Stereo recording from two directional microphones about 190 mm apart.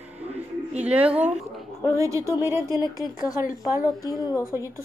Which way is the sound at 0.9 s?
5° right (ahead or behind).